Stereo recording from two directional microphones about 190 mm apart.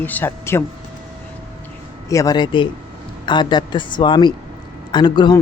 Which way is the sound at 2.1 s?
20° left (ahead or behind).